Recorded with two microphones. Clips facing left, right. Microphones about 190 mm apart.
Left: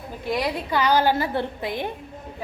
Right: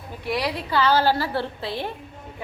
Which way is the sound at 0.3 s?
20° left (ahead or behind).